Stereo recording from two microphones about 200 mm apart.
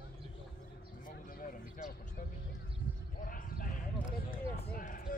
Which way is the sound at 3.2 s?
45° left (ahead or behind).